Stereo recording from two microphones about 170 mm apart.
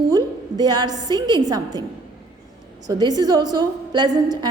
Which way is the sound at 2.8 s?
25° right (ahead or behind).